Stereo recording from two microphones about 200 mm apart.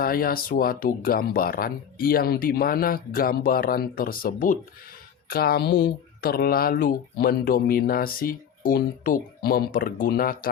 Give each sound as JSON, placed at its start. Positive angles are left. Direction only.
{"t": 0.0, "sound": "speech", "side_deg": 50}